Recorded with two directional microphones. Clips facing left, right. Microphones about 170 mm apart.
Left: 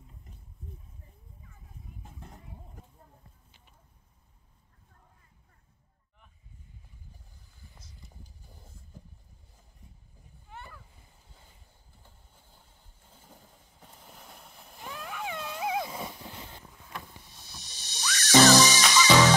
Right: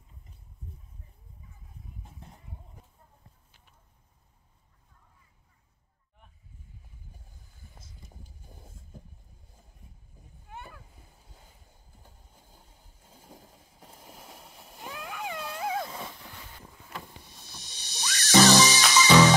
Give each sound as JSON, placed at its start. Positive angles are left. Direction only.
{"t": 8.0, "sound": "vehicle", "side_deg": -20}
{"t": 12.0, "sound": "train", "side_deg": -10}
{"t": 13.7, "sound": "a sound", "side_deg": -10}
{"t": 16.6, "sound": "boat", "side_deg": -5}
{"t": 18.0, "sound": "music", "side_deg": -30}
{"t": 18.6, "sound": "music", "side_deg": 0}